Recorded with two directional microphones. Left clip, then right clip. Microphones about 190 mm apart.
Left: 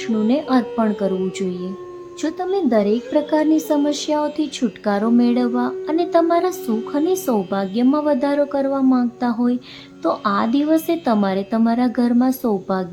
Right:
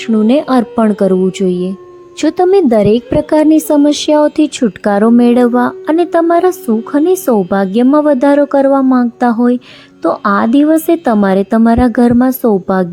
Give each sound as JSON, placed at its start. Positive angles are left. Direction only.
{"t": 0.3, "sound": "a woman's voice", "side_deg": -40}
{"t": 2.2, "sound": "a woman's voice", "side_deg": -45}